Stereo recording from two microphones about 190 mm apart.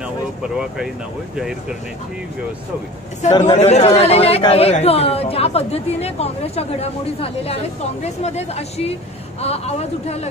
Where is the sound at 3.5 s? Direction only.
35° left (ahead or behind).